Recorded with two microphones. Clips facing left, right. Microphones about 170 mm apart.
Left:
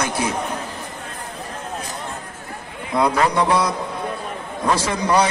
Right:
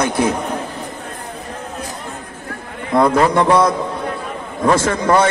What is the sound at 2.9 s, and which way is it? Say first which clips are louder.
Speech: right 5 dB; 50° right (ahead or behind).